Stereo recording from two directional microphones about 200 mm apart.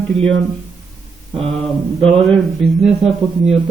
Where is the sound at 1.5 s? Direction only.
Centre (ahead or behind).